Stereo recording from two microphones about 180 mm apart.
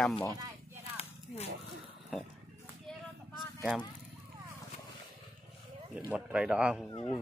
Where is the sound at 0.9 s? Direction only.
35° left (ahead or behind).